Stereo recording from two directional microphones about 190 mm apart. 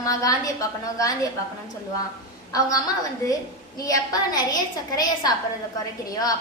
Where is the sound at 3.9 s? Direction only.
20° left (ahead or behind).